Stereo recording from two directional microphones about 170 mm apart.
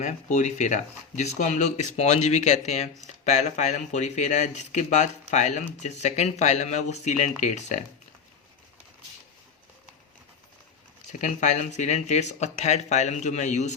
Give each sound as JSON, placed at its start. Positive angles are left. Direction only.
{"t": 0.0, "sound": "speech", "side_deg": 45}
{"t": 11.1, "sound": "speech", "side_deg": 45}